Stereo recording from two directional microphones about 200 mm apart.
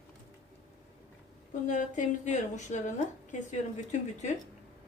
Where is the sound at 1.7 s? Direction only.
40° left (ahead or behind).